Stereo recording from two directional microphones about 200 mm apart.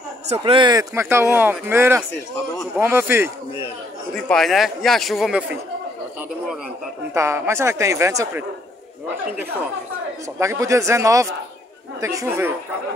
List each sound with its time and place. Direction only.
0.3 s speech: 25° right (ahead or behind)
4.1 s speech: centre (ahead or behind)
7.2 s speech: 15° right (ahead or behind)
10.4 s speech: 15° right (ahead or behind)